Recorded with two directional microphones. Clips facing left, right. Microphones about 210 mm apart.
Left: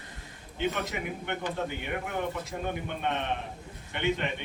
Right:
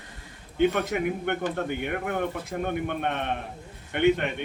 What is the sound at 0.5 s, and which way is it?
A man's voice, 55° right (ahead or behind).